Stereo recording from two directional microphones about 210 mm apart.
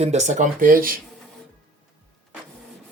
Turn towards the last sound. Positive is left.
turn(degrees=-40)  # may be behind; listen again after turning